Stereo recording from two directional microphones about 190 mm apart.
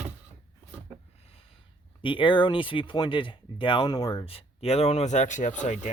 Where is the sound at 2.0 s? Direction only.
25° left (ahead or behind).